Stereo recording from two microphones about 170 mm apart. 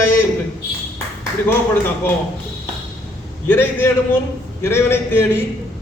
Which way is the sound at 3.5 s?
15° left (ahead or behind).